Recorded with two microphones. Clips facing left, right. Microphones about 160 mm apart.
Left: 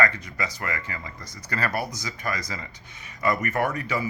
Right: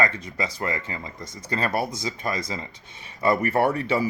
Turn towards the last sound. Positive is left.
turn(degrees=-30)  # may be behind; listen again after turning